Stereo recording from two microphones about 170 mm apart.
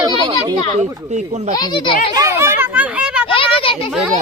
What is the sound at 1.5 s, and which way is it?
Speech, 25° left (ahead or behind).